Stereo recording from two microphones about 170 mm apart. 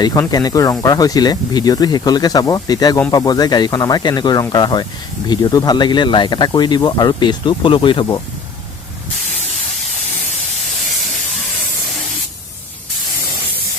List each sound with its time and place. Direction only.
0.0 s speech: 20° left (ahead or behind)